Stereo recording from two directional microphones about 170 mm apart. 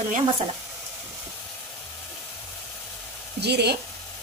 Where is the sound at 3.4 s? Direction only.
75° right (ahead or behind).